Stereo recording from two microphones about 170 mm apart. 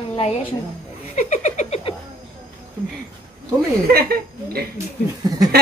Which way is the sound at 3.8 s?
65° right (ahead or behind).